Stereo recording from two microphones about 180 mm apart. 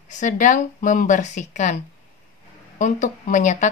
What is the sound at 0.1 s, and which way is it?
A woman's voice, 45° left (ahead or behind).